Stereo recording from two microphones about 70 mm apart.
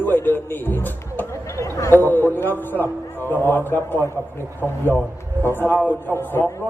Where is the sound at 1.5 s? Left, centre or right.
Left.